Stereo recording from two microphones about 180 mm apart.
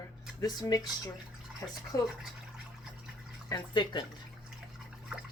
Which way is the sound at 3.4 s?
25° left (ahead or behind).